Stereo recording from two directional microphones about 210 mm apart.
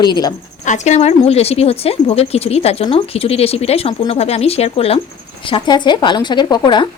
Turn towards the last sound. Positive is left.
turn(degrees=20)  # may be behind; listen again after turning